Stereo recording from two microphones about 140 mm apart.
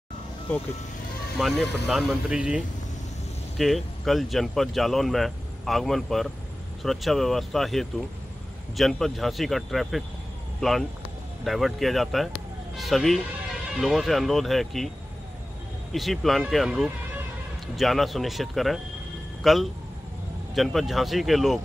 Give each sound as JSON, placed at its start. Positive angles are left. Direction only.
{"t": 0.5, "sound": "speech", "side_deg": 15}
{"t": 1.4, "sound": "speech", "side_deg": 0}
{"t": 15.9, "sound": "speech", "side_deg": 0}